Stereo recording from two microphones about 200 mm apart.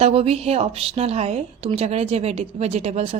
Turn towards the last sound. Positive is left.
turn(degrees=-30)  # may be behind; listen again after turning